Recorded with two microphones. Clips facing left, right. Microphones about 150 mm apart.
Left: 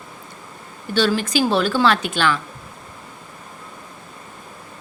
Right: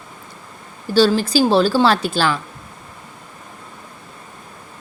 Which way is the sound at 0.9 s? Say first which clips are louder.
Right 4 dB; 35° right (ahead or behind).